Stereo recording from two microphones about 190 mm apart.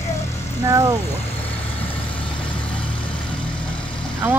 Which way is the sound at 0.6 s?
20° right (ahead or behind).